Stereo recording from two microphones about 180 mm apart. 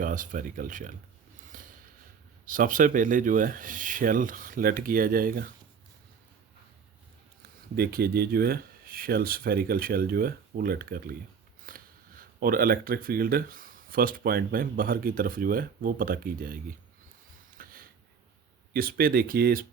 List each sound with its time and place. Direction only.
0.0 s speech: 45° right (ahead or behind)
1.5 s a sound: 50° right (ahead or behind)
2.5 s speech: 50° right (ahead or behind)
7.8 s speech: 60° right (ahead or behind)
17.6 s a sound: 55° right (ahead or behind)
18.7 s speech: 55° right (ahead or behind)